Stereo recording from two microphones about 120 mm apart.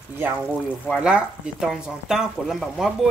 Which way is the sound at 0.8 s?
5° right (ahead or behind).